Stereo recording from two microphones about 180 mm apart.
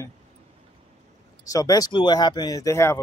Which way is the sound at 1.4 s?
20° left (ahead or behind).